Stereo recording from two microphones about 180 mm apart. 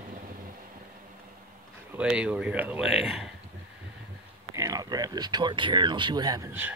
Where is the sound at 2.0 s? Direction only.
5° right (ahead or behind).